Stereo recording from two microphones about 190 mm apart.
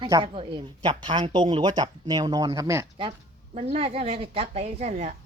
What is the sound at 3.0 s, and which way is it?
A woman's voice, 30° right (ahead or behind).